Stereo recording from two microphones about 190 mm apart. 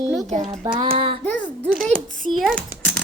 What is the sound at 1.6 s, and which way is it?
A woman's voice, centre (ahead or behind).